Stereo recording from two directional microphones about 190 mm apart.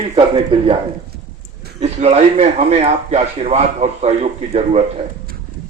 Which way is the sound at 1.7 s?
35° right (ahead or behind).